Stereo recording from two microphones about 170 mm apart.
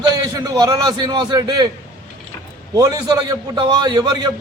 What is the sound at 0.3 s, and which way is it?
A man's voice, 20° right (ahead or behind).